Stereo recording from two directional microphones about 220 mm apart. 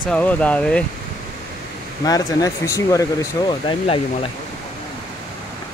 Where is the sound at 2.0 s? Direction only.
15° left (ahead or behind).